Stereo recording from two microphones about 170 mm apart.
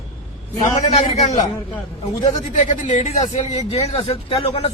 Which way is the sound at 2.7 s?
45° left (ahead or behind).